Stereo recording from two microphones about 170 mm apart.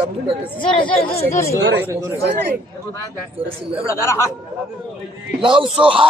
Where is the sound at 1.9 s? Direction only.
15° right (ahead or behind).